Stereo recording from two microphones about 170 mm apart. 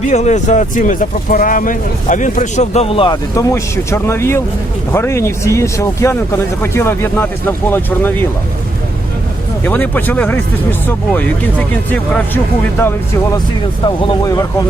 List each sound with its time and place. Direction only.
0.1 s speech: 40° left (ahead or behind)
3.3 s speech: 15° left (ahead or behind)
9.6 s speech: 10° left (ahead or behind)
13.8 s speech: 25° left (ahead or behind)